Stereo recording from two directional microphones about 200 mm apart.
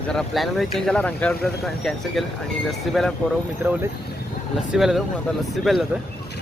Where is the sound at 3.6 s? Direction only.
10° right (ahead or behind).